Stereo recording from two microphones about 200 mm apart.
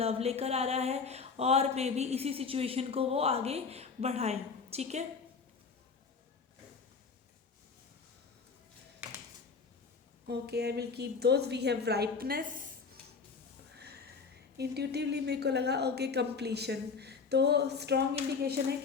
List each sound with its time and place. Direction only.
0.0 s speech: 30° right (ahead or behind)
9.0 s a sound: 5° right (ahead or behind)
10.2 s a woman's voice: 55° right (ahead or behind)
14.6 s a woman's voice: 55° right (ahead or behind)